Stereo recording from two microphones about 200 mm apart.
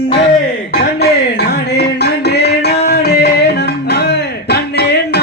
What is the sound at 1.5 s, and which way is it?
Music, 55° left (ahead or behind).